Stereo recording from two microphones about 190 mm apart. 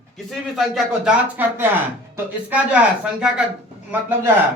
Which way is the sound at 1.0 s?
10° right (ahead or behind).